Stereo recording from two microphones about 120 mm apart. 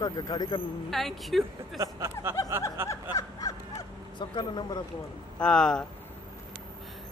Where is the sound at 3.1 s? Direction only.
30° left (ahead or behind).